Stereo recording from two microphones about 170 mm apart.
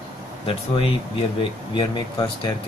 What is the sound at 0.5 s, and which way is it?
Speech, 30° left (ahead or behind).